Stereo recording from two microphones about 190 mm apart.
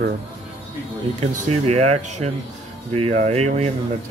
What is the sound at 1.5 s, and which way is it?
Speech, 35° right (ahead or behind).